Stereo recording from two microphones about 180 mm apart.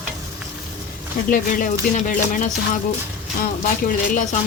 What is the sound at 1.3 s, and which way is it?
Speech, 50° left (ahead or behind).